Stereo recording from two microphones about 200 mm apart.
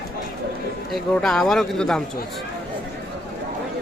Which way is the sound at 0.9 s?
Centre (ahead or behind).